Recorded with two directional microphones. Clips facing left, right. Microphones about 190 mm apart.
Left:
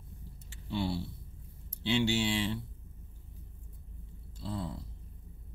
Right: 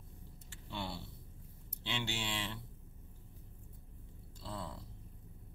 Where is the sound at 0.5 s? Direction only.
10° left (ahead or behind).